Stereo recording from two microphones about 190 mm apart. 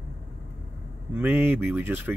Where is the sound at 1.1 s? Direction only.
10° right (ahead or behind).